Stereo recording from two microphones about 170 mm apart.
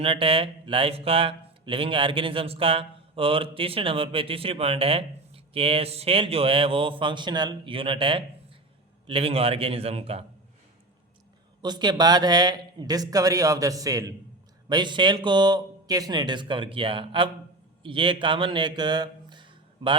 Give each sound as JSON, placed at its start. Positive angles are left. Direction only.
{"t": 0.0, "sound": "speech", "side_deg": -35}
{"t": 11.6, "sound": "a man's voice", "side_deg": -25}